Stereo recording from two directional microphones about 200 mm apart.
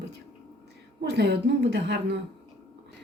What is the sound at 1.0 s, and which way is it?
Speech, 55° right (ahead or behind).